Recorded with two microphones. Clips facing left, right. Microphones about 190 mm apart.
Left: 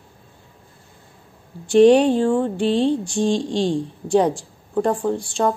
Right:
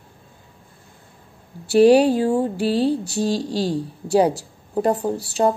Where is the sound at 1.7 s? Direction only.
5° right (ahead or behind).